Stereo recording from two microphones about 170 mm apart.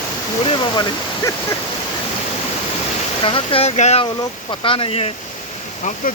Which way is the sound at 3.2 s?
30° left (ahead or behind).